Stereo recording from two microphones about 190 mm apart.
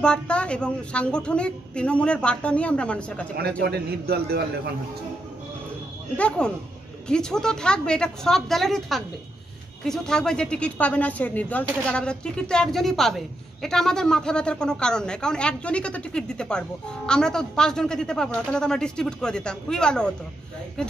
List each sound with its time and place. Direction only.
0.0 s speech: 5° left (ahead or behind)
3.6 s a man's voice: 60° right (ahead or behind)
6.1 s speech: 5° left (ahead or behind)